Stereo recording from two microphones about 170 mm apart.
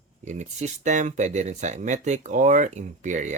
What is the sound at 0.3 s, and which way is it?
Speech, 45° right (ahead or behind).